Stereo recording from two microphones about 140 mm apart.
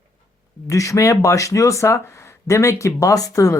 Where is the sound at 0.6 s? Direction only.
25° left (ahead or behind).